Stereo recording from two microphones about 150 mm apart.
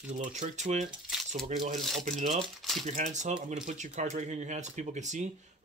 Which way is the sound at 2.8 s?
50° right (ahead or behind).